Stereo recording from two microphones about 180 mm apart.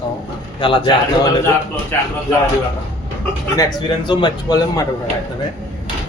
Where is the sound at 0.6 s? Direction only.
25° left (ahead or behind).